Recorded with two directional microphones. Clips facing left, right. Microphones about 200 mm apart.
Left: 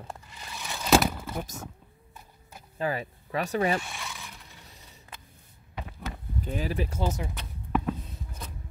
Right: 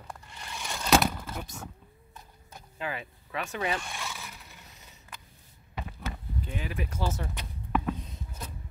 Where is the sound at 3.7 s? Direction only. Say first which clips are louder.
Left 2 dB; centre (ahead or behind).